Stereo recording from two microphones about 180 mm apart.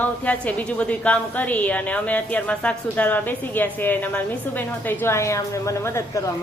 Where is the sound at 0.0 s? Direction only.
10° left (ahead or behind).